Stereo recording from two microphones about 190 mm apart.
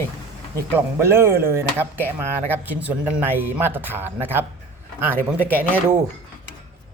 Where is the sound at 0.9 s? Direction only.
15° right (ahead or behind).